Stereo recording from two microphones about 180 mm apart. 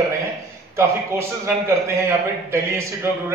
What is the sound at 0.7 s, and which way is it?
A man's voice, 15° right (ahead or behind).